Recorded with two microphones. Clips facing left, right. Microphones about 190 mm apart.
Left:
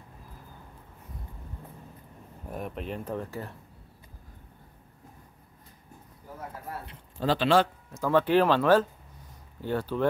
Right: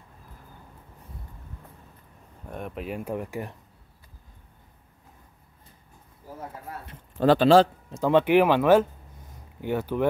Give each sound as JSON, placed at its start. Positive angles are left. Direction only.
{"t": 2.4, "sound": "speech", "side_deg": 0}
{"t": 6.9, "sound": "speech", "side_deg": -50}
{"t": 7.4, "sound": "speech", "side_deg": -35}
{"t": 7.9, "sound": "speech", "side_deg": -20}